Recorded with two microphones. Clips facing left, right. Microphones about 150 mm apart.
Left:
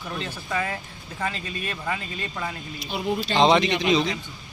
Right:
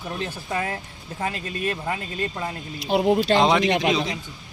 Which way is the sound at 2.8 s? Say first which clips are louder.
Right 8 dB; 65° right (ahead or behind).